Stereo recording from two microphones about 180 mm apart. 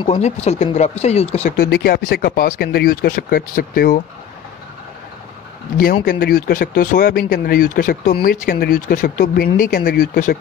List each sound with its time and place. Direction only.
0.0 s speech: 35° left (ahead or behind)
1.6 s speech: 60° left (ahead or behind)
6.0 s speech: 55° left (ahead or behind)